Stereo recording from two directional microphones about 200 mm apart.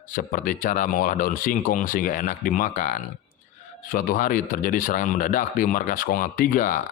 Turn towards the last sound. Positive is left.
turn(degrees=40)  # may be behind; listen again after turning